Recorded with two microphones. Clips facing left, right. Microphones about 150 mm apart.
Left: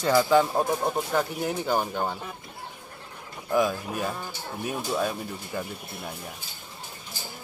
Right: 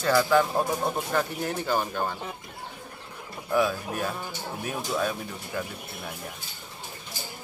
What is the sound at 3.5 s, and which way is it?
Speech, 10° left (ahead or behind).